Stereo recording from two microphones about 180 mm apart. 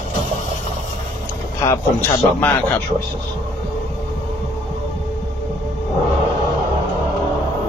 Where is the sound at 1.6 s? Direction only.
15° left (ahead or behind).